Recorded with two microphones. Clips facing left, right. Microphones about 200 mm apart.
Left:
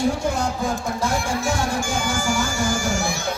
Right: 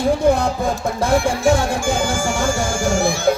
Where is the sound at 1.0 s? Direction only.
55° right (ahead or behind).